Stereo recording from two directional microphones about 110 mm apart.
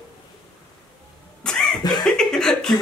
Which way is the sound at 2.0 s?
5° left (ahead or behind).